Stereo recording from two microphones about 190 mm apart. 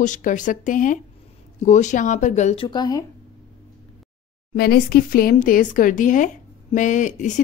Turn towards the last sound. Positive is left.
turn(degrees=40)  # may be behind; listen again after turning